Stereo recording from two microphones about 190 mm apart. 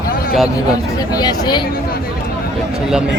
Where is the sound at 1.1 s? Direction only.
20° left (ahead or behind).